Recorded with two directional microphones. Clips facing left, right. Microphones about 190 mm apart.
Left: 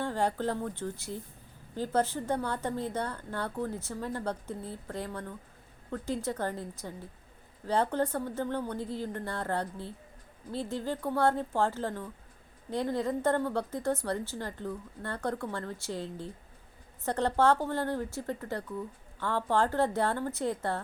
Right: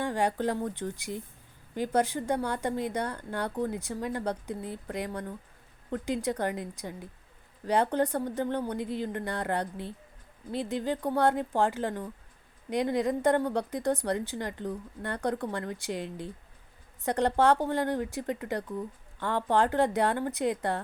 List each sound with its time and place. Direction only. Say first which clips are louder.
0.0 s a woman's voice: right 2 dB; 15° right (ahead or behind)